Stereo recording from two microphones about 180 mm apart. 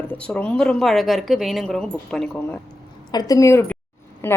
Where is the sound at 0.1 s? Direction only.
10° left (ahead or behind).